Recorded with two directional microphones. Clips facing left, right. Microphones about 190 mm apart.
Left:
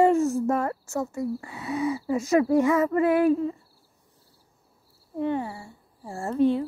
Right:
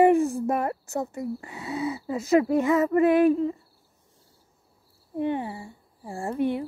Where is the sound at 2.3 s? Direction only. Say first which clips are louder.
Even; 20° right (ahead or behind).